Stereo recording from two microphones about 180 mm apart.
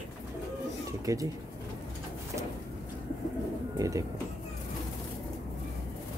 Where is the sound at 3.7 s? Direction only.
20° right (ahead or behind).